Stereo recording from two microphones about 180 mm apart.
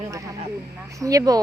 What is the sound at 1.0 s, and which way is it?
Speech, 20° right (ahead or behind).